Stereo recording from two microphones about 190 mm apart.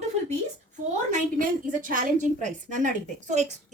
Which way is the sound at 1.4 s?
45° right (ahead or behind).